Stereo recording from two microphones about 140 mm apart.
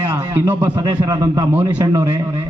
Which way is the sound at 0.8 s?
30° right (ahead or behind).